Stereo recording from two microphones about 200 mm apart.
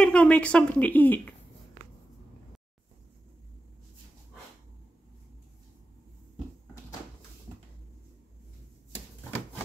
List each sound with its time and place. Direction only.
0.0 s speech: 5° left (ahead or behind)
7.5 s cupboard open or close: 15° right (ahead or behind)